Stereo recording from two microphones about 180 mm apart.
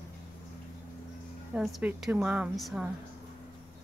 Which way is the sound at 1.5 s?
5° right (ahead or behind).